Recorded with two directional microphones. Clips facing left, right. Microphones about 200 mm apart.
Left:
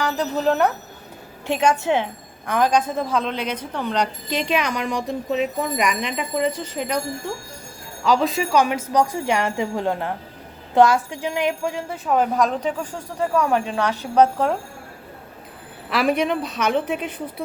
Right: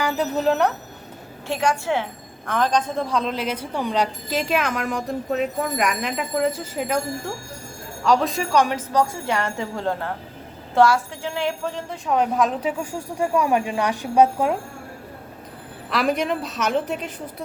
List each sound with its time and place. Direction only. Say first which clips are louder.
0.0 s speech: even; 5° right (ahead or behind)
1.5 s a woman's voice: left 3 dB; 20° left (ahead or behind); by 7.0 s 5° right (ahead or behind)
8.0 s speech: left 1 dB; centre (ahead or behind)
15.9 s speech: left 2 dB; centre (ahead or behind)